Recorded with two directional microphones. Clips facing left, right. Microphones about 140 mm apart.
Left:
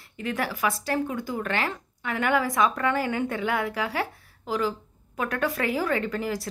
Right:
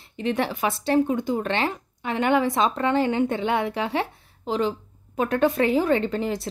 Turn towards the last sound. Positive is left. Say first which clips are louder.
# right 4 dB
turn(degrees=-25)  # may be behind; listen again after turning